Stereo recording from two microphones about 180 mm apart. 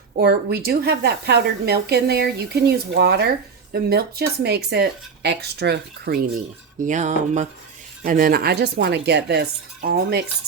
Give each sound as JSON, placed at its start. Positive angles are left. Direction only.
{"t": 0.2, "sound": "speech", "side_deg": -60}
{"t": 6.8, "sound": "a sound", "side_deg": -40}
{"t": 8.0, "sound": "speech", "side_deg": -50}